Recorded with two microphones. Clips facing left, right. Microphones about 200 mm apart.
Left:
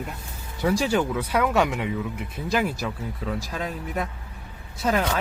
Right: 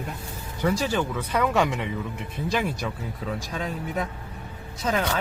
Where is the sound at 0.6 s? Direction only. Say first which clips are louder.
Left 2 dB; 10° left (ahead or behind).